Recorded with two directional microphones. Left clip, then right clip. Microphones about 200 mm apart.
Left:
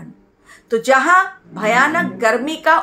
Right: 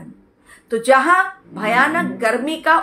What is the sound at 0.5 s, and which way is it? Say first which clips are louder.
A woman's voice: even; 10° left (ahead or behind).